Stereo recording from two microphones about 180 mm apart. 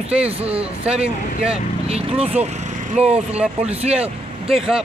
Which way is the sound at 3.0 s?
5° right (ahead or behind).